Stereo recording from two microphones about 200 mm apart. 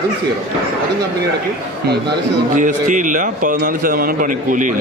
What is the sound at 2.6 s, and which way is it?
A man's voice, 40° right (ahead or behind).